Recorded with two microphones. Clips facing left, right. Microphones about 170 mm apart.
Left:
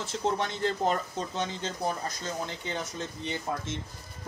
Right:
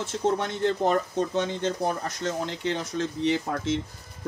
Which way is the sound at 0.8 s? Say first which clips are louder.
Right 5 dB; 60° right (ahead or behind).